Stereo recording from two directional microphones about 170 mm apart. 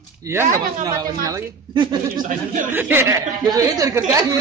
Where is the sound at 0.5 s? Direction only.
20° right (ahead or behind).